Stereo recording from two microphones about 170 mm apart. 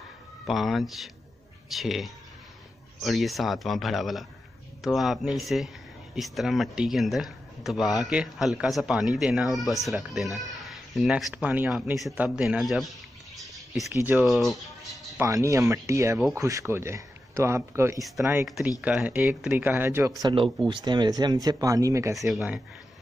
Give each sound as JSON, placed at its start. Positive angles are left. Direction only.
{"t": 0.5, "sound": "speech", "side_deg": 0}
{"t": 13.4, "sound": "a sound", "side_deg": 0}
{"t": 13.9, "sound": "speech", "side_deg": -10}
{"t": 14.2, "sound": "speech", "side_deg": 0}
{"t": 15.1, "sound": "speech", "side_deg": -20}
{"t": 22.3, "sound": "speech", "side_deg": -5}